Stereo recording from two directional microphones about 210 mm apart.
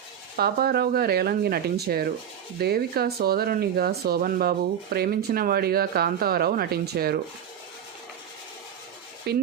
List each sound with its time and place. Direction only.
0.3 s speech: 45° right (ahead or behind)
9.3 s speech: 50° right (ahead or behind)